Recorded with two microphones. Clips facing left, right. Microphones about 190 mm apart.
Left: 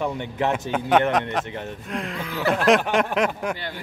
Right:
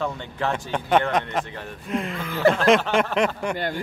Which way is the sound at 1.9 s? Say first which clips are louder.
Right 3 dB; centre (ahead or behind).